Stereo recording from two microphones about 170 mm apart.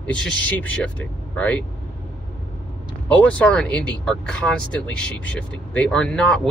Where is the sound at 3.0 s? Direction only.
10° left (ahead or behind).